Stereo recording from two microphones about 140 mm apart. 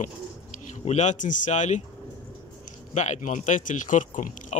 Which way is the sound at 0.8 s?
55° left (ahead or behind).